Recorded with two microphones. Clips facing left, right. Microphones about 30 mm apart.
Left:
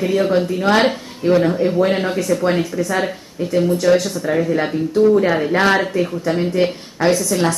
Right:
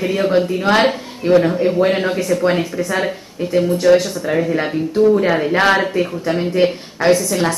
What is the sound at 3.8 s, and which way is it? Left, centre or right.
Speech, centre.